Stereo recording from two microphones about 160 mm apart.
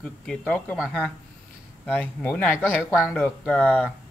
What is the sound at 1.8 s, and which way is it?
Speech, 5° left (ahead or behind).